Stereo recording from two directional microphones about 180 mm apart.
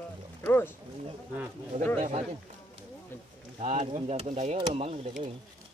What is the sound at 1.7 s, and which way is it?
Speech, 40° right (ahead or behind).